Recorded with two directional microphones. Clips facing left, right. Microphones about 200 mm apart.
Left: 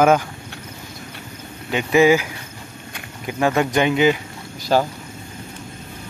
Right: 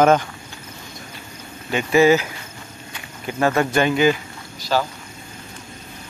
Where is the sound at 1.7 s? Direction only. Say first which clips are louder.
Even; 15° left (ahead or behind).